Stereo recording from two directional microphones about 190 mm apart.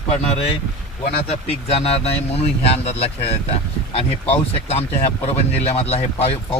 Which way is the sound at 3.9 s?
30° left (ahead or behind).